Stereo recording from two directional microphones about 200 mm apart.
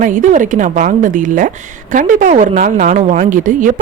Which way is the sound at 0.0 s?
40° right (ahead or behind).